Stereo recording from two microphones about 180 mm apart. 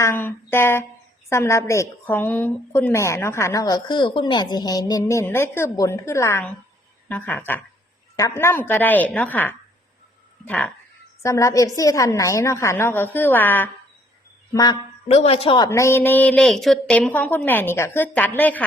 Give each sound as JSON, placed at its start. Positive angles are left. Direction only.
{"t": 0.0, "sound": "a woman's voice", "side_deg": 10}
{"t": 14.5, "sound": "a woman's voice", "side_deg": 25}
{"t": 15.0, "sound": "a woman's voice", "side_deg": 35}